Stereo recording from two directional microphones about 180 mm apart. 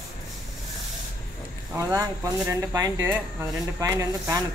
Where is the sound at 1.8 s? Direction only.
20° right (ahead or behind).